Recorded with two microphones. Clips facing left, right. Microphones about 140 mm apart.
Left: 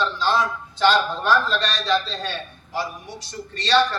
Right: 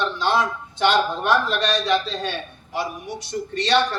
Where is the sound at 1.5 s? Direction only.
20° right (ahead or behind).